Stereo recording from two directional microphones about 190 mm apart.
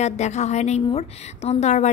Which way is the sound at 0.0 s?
35° left (ahead or behind).